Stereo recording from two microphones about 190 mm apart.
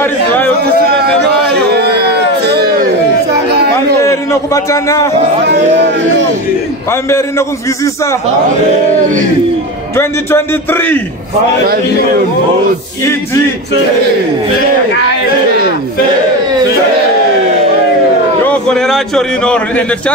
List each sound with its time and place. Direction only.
0.0 s a sound: 10° left (ahead or behind)
1.5 s a sound: 60° right (ahead or behind)
3.7 s a man's voice: 15° left (ahead or behind)
5.5 s a man's voice: 65° right (ahead or behind)
6.9 s a man's voice: 15° left (ahead or behind)
9.9 s a man's voice: 10° left (ahead or behind)
13.0 s a man's voice: 15° left (ahead or behind)
18.5 s a man's voice: 5° left (ahead or behind)